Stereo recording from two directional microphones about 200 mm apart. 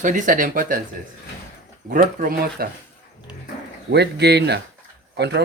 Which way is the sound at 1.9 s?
45° right (ahead or behind).